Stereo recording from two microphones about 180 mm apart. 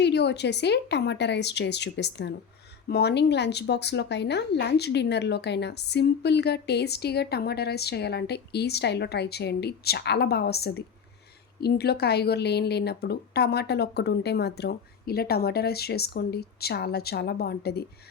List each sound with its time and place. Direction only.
0.0 s a woman's voice: 70° left (ahead or behind)